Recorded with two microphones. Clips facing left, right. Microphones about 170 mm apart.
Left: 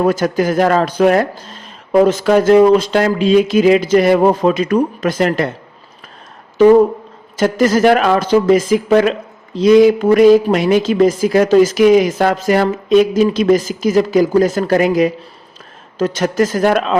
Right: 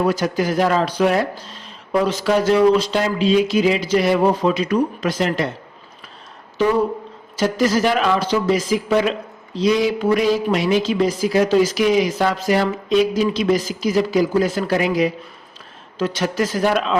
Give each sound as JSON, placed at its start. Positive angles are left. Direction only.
{"t": 0.0, "sound": "speech", "side_deg": 50}
{"t": 7.3, "sound": "speech", "side_deg": 50}